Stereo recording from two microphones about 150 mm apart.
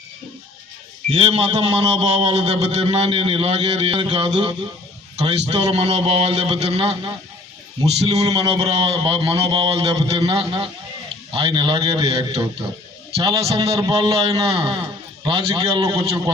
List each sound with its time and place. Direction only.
1.1 s a man's voice: 40° right (ahead or behind)
8.1 s a man's voice: 45° right (ahead or behind)